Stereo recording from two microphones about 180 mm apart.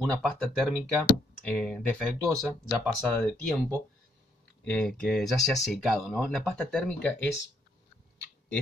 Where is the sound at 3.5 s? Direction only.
10° left (ahead or behind).